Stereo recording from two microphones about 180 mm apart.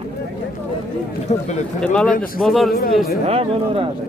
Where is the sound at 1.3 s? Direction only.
40° left (ahead or behind).